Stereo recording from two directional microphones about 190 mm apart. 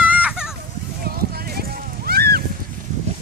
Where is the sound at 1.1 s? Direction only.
50° right (ahead or behind).